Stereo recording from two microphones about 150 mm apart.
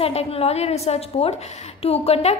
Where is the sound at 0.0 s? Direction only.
40° left (ahead or behind).